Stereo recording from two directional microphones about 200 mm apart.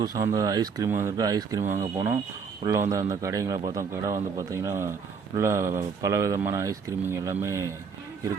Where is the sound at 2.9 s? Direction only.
15° right (ahead or behind).